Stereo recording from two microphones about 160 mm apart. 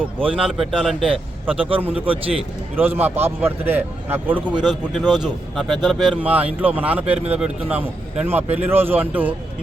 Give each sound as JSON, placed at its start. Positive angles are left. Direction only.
{"t": 0.0, "sound": "a man's voice", "side_deg": -10}
{"t": 1.1, "sound": "a man's voice", "side_deg": -35}
{"t": 2.7, "sound": "a man's voice", "side_deg": -15}